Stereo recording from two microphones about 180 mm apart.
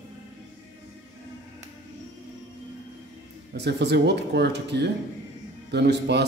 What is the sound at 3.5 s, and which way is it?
A man's voice, 70° right (ahead or behind).